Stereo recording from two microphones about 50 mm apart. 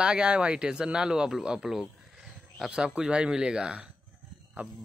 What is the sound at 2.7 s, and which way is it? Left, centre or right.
Speech, right.